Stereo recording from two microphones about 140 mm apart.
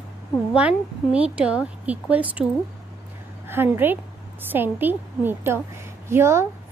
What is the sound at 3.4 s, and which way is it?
A woman's voice, 15° right (ahead or behind).